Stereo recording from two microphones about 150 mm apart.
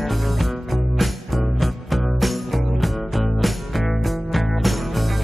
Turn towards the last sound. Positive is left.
turn(degrees=0)  # may be behind; listen again after turning